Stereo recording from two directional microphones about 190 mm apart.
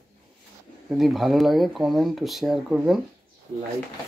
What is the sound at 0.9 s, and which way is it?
Speech, centre (ahead or behind).